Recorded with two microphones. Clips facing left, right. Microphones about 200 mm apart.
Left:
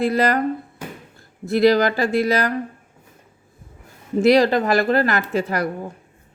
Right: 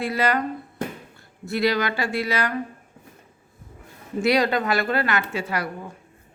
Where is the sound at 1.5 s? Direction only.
40° left (ahead or behind).